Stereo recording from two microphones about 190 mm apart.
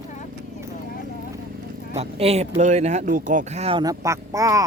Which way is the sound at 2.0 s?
30° right (ahead or behind).